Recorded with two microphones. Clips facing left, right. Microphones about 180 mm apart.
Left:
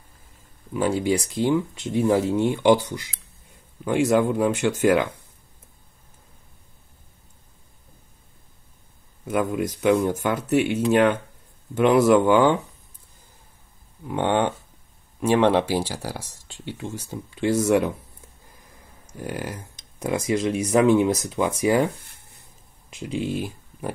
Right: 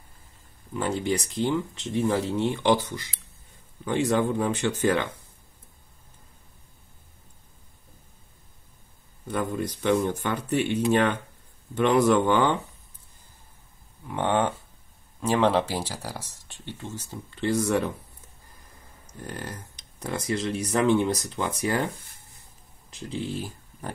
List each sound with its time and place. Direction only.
0.7 s speech: 10° left (ahead or behind)
10.0 s speech: 10° left (ahead or behind)
14.0 s speech: 15° left (ahead or behind)
19.2 s speech: 10° left (ahead or behind)
21.8 s a sound: 60° left (ahead or behind)
22.8 s speech: 10° left (ahead or behind)